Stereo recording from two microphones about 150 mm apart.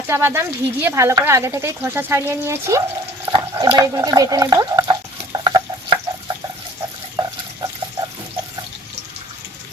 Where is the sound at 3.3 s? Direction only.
30° right (ahead or behind).